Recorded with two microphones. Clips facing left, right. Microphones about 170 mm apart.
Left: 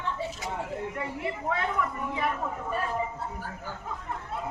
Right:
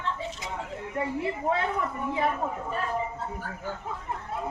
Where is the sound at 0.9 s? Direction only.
30° right (ahead or behind).